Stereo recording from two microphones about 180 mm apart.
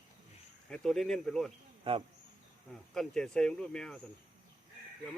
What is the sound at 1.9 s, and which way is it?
Speech, 30° right (ahead or behind).